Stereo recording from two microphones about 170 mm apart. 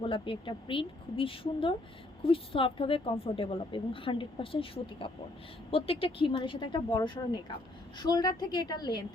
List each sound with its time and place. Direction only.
0.0 s speech: 30° left (ahead or behind)